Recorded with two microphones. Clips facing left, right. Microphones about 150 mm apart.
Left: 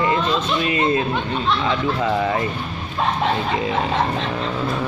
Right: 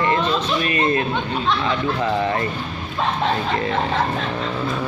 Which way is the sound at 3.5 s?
10° left (ahead or behind).